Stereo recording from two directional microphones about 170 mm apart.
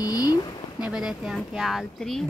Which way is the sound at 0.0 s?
20° left (ahead or behind).